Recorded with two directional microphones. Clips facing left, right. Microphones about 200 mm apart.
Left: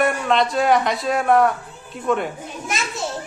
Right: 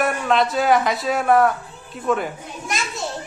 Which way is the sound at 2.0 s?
Centre (ahead or behind).